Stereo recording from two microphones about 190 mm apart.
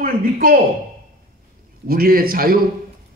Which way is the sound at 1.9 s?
50° right (ahead or behind).